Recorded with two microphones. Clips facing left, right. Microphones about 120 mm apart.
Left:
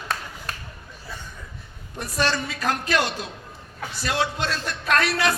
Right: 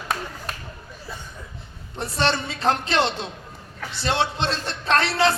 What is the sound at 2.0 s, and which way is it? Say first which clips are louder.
Speech: right 2 dB; 25° right (ahead or behind).